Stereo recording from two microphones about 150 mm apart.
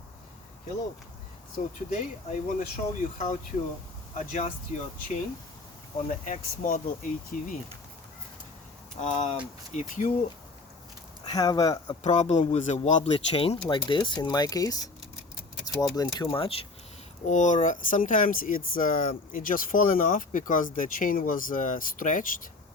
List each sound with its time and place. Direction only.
1.5 s speech: 60° left (ahead or behind)
6.0 s speech: 55° left (ahead or behind)
9.0 s speech: 45° left (ahead or behind)
11.3 s speech: 25° left (ahead or behind)
12.0 s speech: 50° left (ahead or behind)
17.2 s speech: 55° left (ahead or behind)